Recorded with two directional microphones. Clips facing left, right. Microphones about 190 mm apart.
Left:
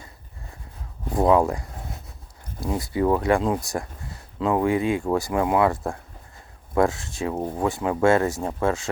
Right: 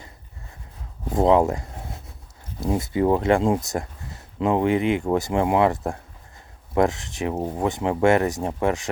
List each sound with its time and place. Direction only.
1.1 s speech: 25° right (ahead or behind)
7.3 s speech: 5° right (ahead or behind)
7.6 s speech: 20° right (ahead or behind)